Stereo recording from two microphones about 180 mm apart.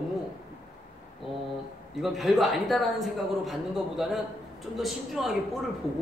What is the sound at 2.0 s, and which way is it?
Speech, centre (ahead or behind).